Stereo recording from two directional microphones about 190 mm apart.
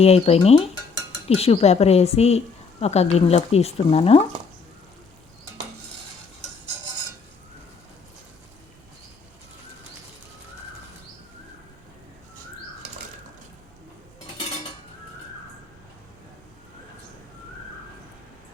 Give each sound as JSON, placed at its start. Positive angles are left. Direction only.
{"t": 0.0, "sound": "speech", "side_deg": 30}